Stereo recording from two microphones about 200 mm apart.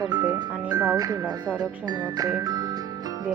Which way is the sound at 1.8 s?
20° right (ahead or behind).